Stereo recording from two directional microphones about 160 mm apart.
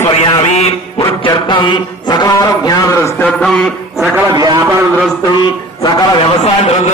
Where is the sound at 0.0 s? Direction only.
40° left (ahead or behind); by 3.3 s 20° left (ahead or behind).